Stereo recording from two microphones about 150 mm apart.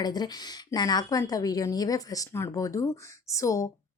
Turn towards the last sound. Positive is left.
turn(degrees=20)  # may be behind; listen again after turning